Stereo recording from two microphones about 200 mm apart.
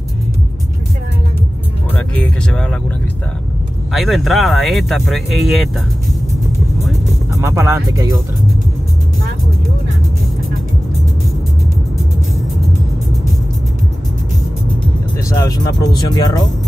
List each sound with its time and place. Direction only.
2.5 s speech: 5° left (ahead or behind)
3.9 s speech: centre (ahead or behind)
7.3 s speech: 15° right (ahead or behind)
15.2 s speech: 20° left (ahead or behind)